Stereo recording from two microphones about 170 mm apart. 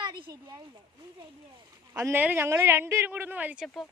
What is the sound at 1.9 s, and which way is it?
A woman's voice, 15° right (ahead or behind).